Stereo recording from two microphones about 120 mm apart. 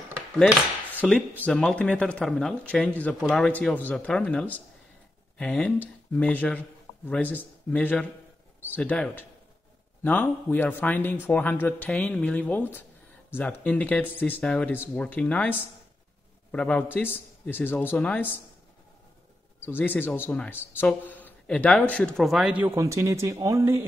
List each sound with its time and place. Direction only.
1.0 s speech: 5° left (ahead or behind)
16.5 s speech: 10° left (ahead or behind)
19.6 s speech: 15° left (ahead or behind); by 22.6 s 5° right (ahead or behind)
22.6 s speech: 20° right (ahead or behind)